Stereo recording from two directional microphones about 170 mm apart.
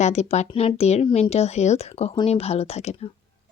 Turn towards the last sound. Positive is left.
turn(degrees=40)  # may be behind; listen again after turning